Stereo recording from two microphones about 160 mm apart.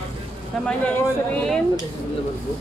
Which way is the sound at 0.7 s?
10° left (ahead or behind).